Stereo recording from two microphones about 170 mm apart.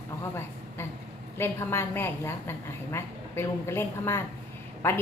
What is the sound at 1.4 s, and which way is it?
A woman's voice, 15° left (ahead or behind).